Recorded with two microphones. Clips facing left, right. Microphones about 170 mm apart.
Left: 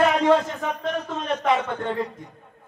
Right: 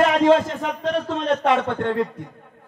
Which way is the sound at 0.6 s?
80° right.